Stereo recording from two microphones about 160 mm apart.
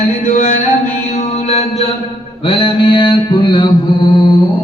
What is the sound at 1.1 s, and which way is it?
Music, 45° left (ahead or behind).